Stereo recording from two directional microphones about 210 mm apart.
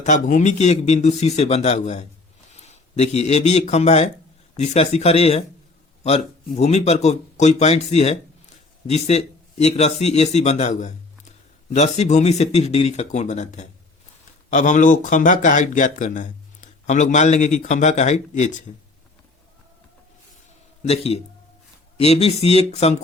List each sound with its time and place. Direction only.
0.0 s speech: 35° left (ahead or behind)
20.8 s speech: 30° left (ahead or behind)